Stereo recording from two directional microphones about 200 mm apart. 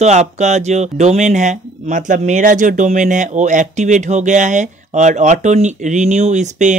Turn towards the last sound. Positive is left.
turn(degrees=-35)  # may be behind; listen again after turning